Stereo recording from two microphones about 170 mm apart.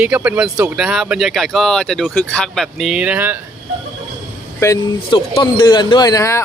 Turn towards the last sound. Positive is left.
turn(degrees=20)  # may be behind; listen again after turning